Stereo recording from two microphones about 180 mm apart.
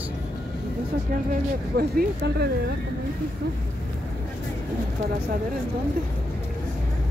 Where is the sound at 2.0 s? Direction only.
65° right (ahead or behind).